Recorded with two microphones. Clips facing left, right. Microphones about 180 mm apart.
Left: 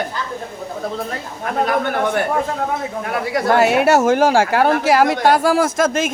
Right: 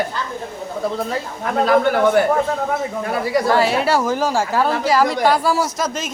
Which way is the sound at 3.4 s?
55° left (ahead or behind).